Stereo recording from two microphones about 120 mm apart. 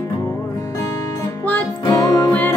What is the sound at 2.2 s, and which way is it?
Music, 15° left (ahead or behind).